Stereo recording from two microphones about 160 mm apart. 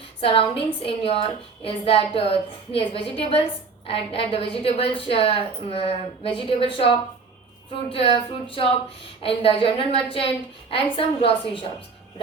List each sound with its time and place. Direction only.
0.2 s a woman's voice: 35° left (ahead or behind)